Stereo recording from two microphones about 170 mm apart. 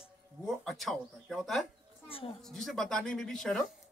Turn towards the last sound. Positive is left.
turn(degrees=0)  # may be behind; listen again after turning